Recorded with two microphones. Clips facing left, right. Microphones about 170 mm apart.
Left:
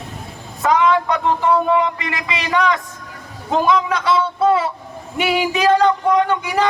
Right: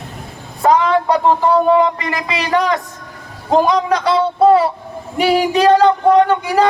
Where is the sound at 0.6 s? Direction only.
35° right (ahead or behind).